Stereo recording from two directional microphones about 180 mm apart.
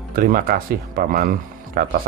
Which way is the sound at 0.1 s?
55° right (ahead or behind).